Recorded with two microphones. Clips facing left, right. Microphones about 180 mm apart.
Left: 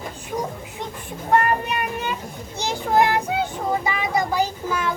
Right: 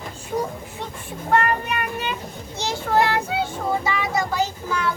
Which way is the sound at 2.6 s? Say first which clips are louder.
Left 1 dB; 15° left (ahead or behind).